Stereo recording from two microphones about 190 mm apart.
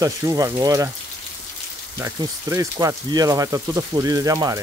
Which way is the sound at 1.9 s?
15° right (ahead or behind).